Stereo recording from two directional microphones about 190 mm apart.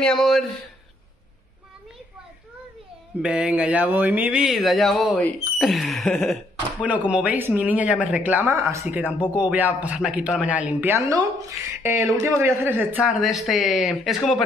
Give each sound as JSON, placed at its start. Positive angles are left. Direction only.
{"t": 0.0, "sound": "speech", "side_deg": 5}
{"t": 3.2, "sound": "speech", "side_deg": -5}
{"t": 13.2, "sound": "speech", "side_deg": 0}